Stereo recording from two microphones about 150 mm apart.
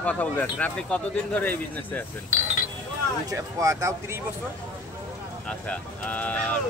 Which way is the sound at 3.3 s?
20° right (ahead or behind).